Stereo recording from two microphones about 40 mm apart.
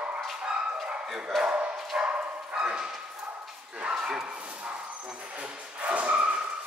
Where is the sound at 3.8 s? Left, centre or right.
Centre.